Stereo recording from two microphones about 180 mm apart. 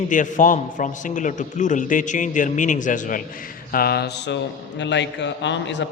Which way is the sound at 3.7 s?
60° left (ahead or behind).